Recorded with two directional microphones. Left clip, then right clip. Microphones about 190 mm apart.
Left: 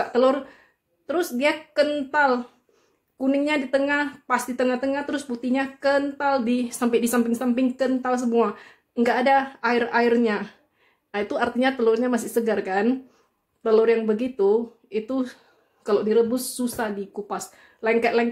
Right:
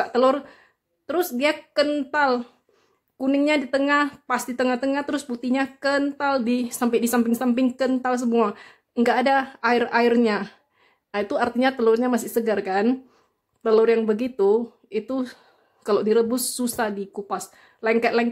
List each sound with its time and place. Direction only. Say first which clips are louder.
0.0 s a woman's voice: right 1 dB; 30° right (ahead or behind)
15.8 s speech: even; 40° right (ahead or behind)